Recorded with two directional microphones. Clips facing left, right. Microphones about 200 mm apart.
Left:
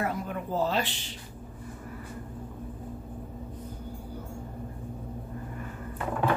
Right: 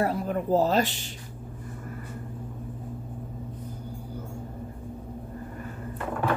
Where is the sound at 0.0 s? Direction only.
35° right (ahead or behind).